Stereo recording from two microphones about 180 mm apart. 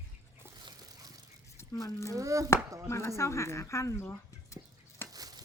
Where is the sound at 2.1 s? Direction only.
20° right (ahead or behind).